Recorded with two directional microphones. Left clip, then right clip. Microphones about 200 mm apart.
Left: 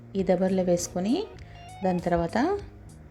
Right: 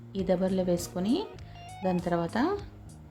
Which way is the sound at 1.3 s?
Centre (ahead or behind).